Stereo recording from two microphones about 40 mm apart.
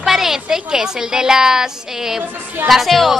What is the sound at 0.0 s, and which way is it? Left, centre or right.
A woman's voice, centre.